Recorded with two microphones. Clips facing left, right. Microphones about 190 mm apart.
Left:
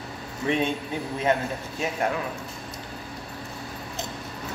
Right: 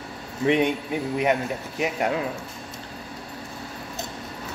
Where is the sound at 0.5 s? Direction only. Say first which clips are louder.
Right 4 dB; 15° right (ahead or behind).